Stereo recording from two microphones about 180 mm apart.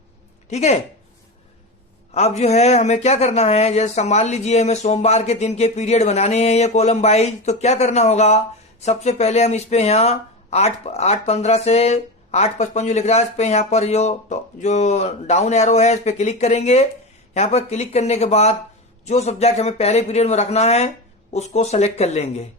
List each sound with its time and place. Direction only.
0.5 s speech: 40° left (ahead or behind)
2.1 s speech: 35° left (ahead or behind)